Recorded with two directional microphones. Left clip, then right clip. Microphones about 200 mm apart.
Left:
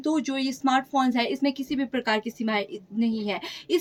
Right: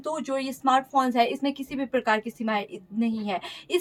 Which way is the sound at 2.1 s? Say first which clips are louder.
Left 1 dB; 35° right (ahead or behind).